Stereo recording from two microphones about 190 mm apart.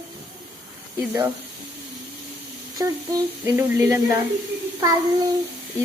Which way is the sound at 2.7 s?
15° right (ahead or behind).